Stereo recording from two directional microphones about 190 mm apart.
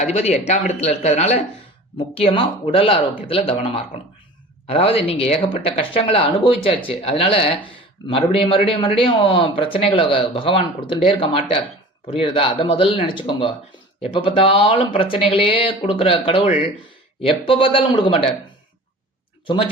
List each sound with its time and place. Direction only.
0.0 s speech: 35° left (ahead or behind)